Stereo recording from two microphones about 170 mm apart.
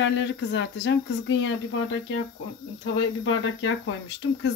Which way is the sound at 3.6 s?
90° left.